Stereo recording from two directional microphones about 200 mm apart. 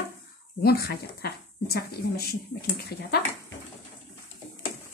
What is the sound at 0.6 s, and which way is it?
Speech, 50° left (ahead or behind).